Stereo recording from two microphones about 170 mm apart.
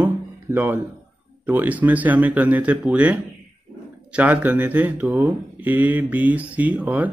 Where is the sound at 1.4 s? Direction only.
10° right (ahead or behind).